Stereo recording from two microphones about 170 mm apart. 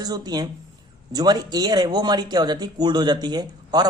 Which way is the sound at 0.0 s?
25° right (ahead or behind).